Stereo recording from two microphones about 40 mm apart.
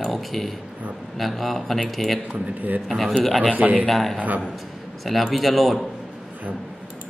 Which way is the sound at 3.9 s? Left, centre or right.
Centre.